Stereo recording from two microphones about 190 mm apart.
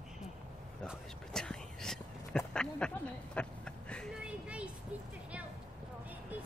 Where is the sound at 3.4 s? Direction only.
5° left (ahead or behind).